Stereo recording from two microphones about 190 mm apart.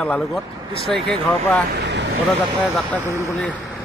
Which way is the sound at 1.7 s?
65° right (ahead or behind).